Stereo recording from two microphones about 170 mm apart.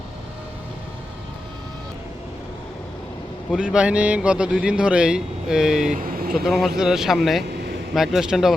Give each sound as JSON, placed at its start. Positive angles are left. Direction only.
{"t": 3.5, "sound": "speech", "side_deg": -5}
{"t": 5.9, "sound": "vehicle", "side_deg": -55}
{"t": 6.3, "sound": "speech", "side_deg": 0}